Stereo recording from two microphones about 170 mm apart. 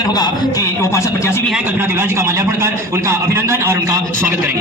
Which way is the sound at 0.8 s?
15° left (ahead or behind).